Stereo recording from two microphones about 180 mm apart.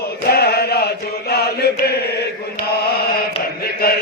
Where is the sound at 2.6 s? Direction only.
60° left (ahead or behind).